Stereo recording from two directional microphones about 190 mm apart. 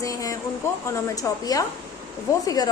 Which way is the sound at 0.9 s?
15° left (ahead or behind).